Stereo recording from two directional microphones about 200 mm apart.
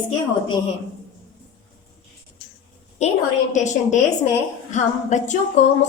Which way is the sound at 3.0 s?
35° left (ahead or behind).